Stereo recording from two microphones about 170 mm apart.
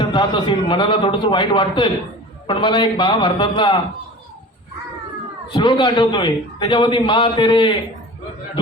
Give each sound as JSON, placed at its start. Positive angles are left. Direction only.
{"t": 0.0, "sound": "a man's voice", "side_deg": 30}
{"t": 5.5, "sound": "a man's voice", "side_deg": 25}